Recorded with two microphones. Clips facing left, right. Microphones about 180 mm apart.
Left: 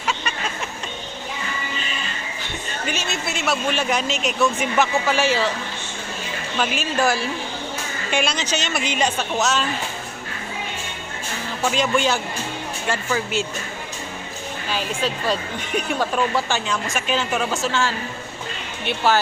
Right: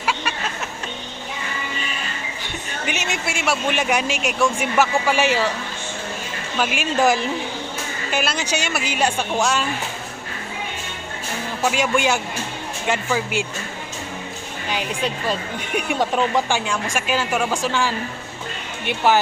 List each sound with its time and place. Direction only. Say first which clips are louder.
0.0 s a sound: right 2 dB; 5° right (ahead or behind)
2.8 s speech: right 1 dB; 15° right (ahead or behind)
6.6 s speech: right 2 dB; 15° right (ahead or behind)
8.1 s speech: even; 5° right (ahead or behind)
11.6 s speech: even; 10° right (ahead or behind)
14.7 s speech: even; 15° right (ahead or behind)